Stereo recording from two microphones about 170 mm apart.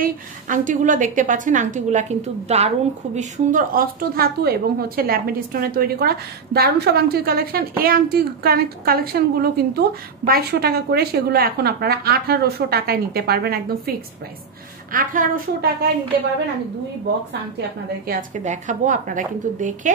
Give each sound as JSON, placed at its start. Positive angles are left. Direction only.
{"t": 0.0, "sound": "a woman's voice", "side_deg": -50}
{"t": 14.9, "sound": "a woman's voice", "side_deg": -55}
{"t": 18.0, "sound": "a woman's voice", "side_deg": -50}